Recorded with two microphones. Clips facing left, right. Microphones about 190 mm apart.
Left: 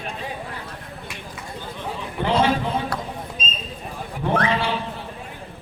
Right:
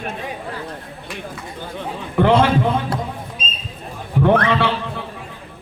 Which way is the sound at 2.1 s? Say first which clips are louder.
Right 6 dB; 55° right (ahead or behind).